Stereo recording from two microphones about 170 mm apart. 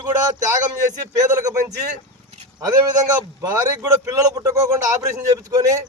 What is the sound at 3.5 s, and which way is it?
A man's voice, 15° right (ahead or behind).